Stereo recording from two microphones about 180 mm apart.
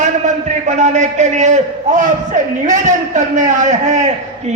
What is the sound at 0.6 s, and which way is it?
A man's voice, 40° right (ahead or behind).